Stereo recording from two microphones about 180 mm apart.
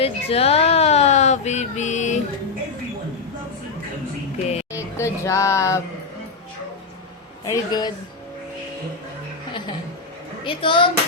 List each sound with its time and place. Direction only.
0.0 s speech: 35° left (ahead or behind)
4.7 s speech: 15° left (ahead or behind)
7.4 s speech: 20° left (ahead or behind)
10.4 s speech: 25° left (ahead or behind)